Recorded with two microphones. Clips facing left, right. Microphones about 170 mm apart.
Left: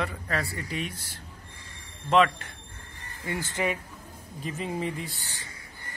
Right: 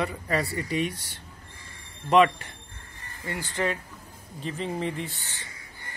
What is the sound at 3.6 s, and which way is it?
Speech, 10° left (ahead or behind).